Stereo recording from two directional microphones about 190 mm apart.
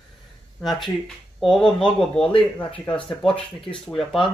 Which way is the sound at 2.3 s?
30° left (ahead or behind).